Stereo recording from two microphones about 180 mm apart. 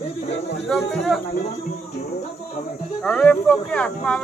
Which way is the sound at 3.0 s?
5° left (ahead or behind).